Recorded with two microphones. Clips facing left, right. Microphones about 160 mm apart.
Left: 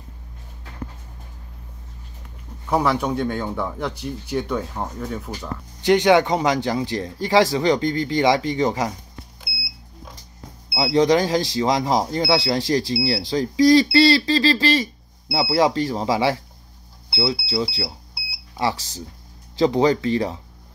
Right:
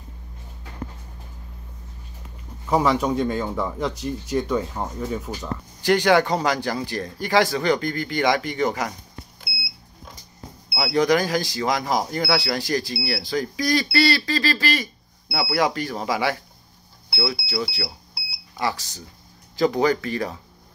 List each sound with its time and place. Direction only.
2.6 s speech: centre (ahead or behind)
5.8 s speech: 20° left (ahead or behind)
10.7 s speech: 25° left (ahead or behind)